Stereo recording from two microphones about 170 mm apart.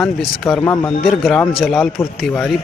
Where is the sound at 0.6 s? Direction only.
20° left (ahead or behind).